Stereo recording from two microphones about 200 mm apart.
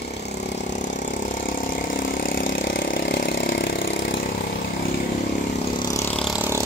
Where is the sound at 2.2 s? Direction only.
45° left (ahead or behind).